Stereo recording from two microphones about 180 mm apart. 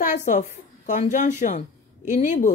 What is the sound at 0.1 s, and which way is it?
A woman's voice, 40° left (ahead or behind).